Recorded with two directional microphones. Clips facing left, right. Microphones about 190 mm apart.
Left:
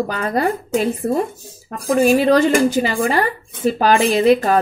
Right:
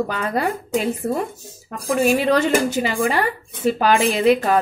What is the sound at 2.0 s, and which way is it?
A woman's voice, 40° left (ahead or behind).